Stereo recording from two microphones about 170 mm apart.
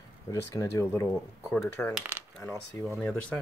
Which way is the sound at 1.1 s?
Centre (ahead or behind).